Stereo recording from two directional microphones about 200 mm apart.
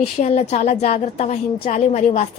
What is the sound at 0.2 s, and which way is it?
A woman's voice, 35° left (ahead or behind).